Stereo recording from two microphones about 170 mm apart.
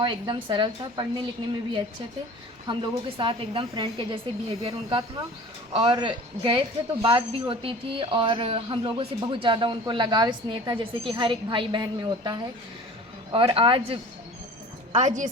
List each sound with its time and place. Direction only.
0.0 s a woman's voice: 25° right (ahead or behind)
2.7 s a woman's voice: 25° right (ahead or behind)
14.9 s a woman's voice: 45° right (ahead or behind)